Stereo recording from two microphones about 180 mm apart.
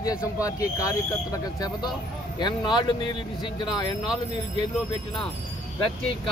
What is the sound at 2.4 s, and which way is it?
A man's voice, 25° left (ahead or behind).